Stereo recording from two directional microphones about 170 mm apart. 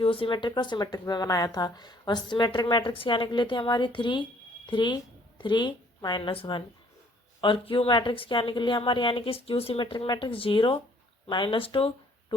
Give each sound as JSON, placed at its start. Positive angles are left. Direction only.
{"t": 0.0, "sound": "a woman's voice", "side_deg": 30}